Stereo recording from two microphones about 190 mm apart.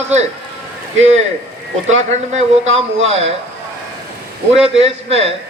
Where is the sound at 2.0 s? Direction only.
35° right (ahead or behind).